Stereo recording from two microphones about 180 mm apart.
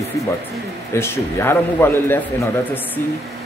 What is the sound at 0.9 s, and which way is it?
Speech, 15° left (ahead or behind).